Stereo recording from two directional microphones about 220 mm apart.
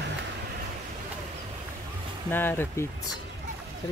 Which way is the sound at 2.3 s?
10° left (ahead or behind).